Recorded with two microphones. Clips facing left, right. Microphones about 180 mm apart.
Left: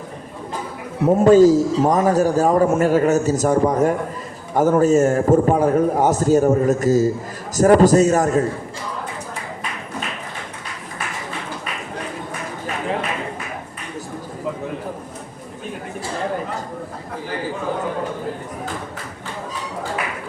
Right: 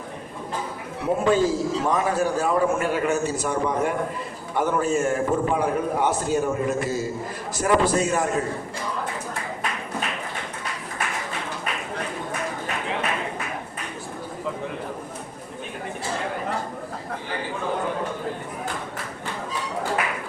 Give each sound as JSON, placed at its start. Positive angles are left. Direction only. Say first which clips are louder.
{"t": 1.0, "sound": "a man's voice", "louder": "left 9 dB", "side_deg": 40}